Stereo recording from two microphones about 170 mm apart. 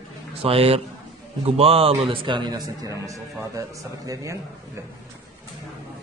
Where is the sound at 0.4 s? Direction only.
35° right (ahead or behind).